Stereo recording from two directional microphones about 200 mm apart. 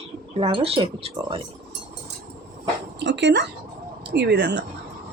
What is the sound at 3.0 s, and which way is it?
Speech, 60° right (ahead or behind).